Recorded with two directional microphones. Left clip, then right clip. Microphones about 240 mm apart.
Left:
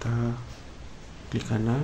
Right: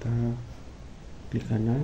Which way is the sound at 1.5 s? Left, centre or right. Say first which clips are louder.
Left 1 dB; left.